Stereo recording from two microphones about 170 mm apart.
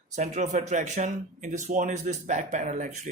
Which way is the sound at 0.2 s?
45° right (ahead or behind).